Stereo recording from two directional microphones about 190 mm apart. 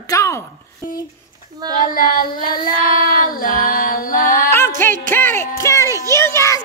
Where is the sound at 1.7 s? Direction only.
45° left (ahead or behind).